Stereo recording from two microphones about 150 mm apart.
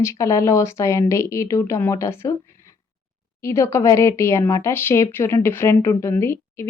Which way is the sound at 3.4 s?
20° left (ahead or behind).